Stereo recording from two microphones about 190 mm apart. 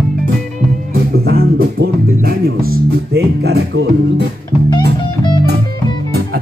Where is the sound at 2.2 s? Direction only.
50° right (ahead or behind).